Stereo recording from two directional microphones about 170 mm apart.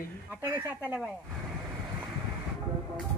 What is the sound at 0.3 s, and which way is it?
Speech, 15° right (ahead or behind).